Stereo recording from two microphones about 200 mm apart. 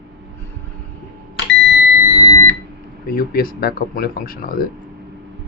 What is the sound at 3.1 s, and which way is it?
Speech, 50° left (ahead or behind).